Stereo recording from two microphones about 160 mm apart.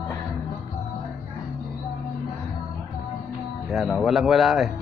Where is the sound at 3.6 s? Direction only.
Centre (ahead or behind).